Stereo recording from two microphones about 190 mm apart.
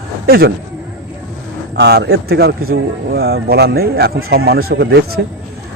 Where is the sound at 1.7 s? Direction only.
60° right (ahead or behind).